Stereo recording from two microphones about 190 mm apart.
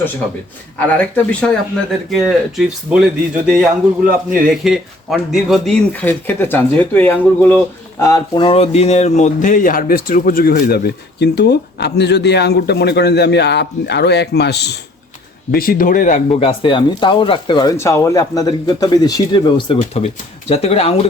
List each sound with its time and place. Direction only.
0.9 s speech: 5° left (ahead or behind); by 14.8 s 60° left (ahead or behind)
15.5 s speech: 50° left (ahead or behind); by 21.1 s 30° left (ahead or behind)